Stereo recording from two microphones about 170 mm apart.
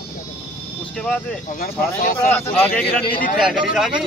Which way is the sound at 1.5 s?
55° left (ahead or behind).